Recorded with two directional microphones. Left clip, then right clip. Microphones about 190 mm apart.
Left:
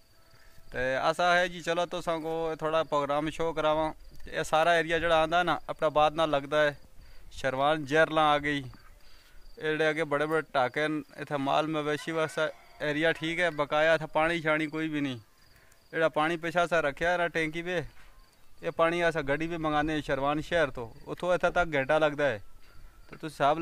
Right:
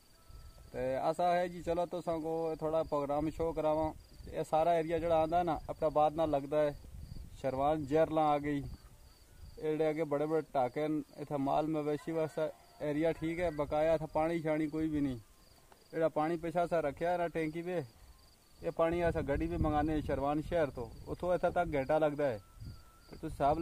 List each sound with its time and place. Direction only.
0.7 s speech: 5° left (ahead or behind)
15.9 s speech: 10° left (ahead or behind)